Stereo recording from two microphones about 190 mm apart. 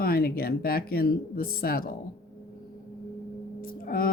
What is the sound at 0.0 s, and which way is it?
Speech, 50° left (ahead or behind).